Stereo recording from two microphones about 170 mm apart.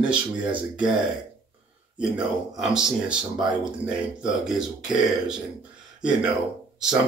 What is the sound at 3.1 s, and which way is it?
Speech, 5° right (ahead or behind).